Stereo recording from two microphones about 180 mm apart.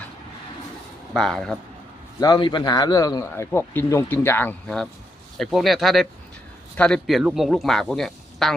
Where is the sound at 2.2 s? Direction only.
25° left (ahead or behind).